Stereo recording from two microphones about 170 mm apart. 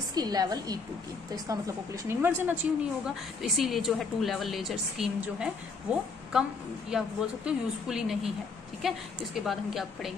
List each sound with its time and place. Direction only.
0.1 s a woman's voice: 25° right (ahead or behind); by 10.1 s centre (ahead or behind)